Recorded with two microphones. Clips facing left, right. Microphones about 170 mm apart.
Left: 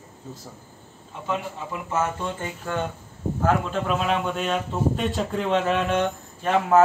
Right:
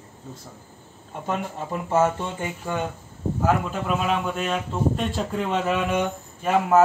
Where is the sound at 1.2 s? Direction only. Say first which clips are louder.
Right 1 dB; 35° right (ahead or behind).